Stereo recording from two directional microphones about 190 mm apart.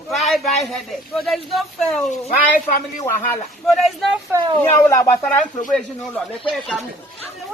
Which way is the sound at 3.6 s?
Centre (ahead or behind).